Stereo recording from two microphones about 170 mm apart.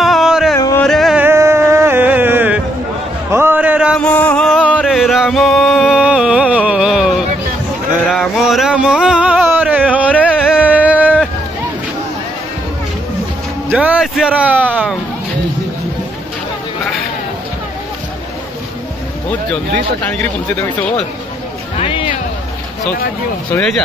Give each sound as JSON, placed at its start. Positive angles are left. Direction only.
{"t": 0.0, "sound": "music", "side_deg": 0}
{"t": 0.6, "sound": "music", "side_deg": 20}
{"t": 0.8, "sound": "music", "side_deg": 0}
{"t": 1.2, "sound": "music", "side_deg": -15}
{"t": 3.3, "sound": "a sound", "side_deg": -15}
{"t": 4.0, "sound": "music", "side_deg": 10}
{"t": 13.7, "sound": "music", "side_deg": -10}
{"t": 20.1, "sound": "speech", "side_deg": 10}
{"t": 21.7, "sound": "music", "side_deg": 30}
{"t": 23.5, "sound": "speech", "side_deg": 5}